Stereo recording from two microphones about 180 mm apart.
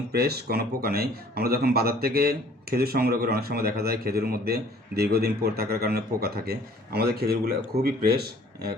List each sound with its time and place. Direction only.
0.1 s speech: 60° right (ahead or behind)